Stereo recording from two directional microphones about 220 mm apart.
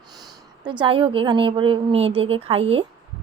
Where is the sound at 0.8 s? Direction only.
25° right (ahead or behind).